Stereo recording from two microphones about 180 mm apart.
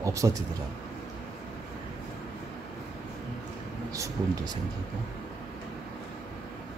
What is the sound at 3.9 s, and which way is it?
Speech, 20° right (ahead or behind).